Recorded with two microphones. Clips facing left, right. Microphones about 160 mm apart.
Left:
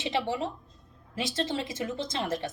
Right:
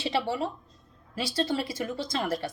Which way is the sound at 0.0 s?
20° left (ahead or behind).